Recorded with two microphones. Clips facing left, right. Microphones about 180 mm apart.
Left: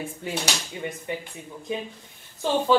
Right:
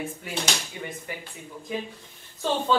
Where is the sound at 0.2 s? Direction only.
30° left (ahead or behind).